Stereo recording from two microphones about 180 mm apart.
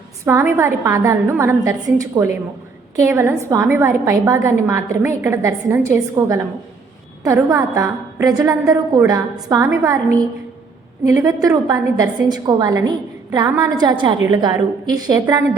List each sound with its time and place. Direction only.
0.3 s a woman's voice: 15° right (ahead or behind)